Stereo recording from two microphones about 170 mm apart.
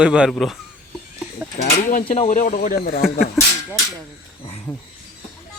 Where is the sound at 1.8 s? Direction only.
45° left (ahead or behind).